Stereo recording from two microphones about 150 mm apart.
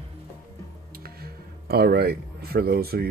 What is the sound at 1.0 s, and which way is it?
Speech, 90° right.